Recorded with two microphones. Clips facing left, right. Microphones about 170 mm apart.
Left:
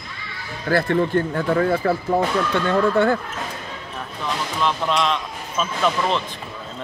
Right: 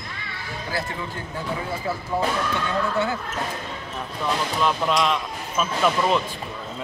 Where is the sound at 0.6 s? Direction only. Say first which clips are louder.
Left 12 dB; 60° left (ahead or behind).